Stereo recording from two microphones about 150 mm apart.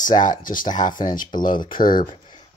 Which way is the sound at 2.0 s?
30° left (ahead or behind).